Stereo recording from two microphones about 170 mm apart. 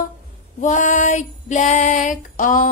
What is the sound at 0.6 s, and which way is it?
Female singing, 45° left (ahead or behind).